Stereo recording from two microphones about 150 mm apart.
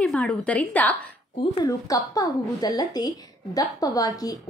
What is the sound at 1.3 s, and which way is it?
Speech, 30° left (ahead or behind).